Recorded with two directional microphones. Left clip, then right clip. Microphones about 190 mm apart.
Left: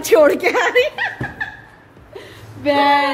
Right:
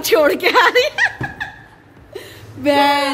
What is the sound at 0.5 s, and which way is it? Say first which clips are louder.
Speech: right 3 dB; 20° right (ahead or behind).